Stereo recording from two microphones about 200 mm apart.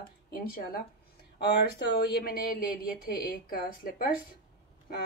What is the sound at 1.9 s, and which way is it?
A woman's voice, 55° left (ahead or behind).